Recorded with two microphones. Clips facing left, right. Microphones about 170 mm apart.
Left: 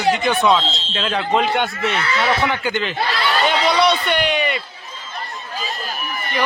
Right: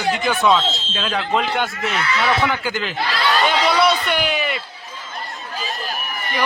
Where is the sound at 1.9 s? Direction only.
35° left (ahead or behind).